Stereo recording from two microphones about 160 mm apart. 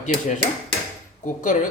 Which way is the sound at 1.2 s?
55° left (ahead or behind).